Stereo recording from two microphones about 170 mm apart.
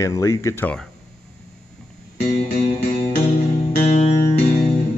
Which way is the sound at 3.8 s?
35° left (ahead or behind).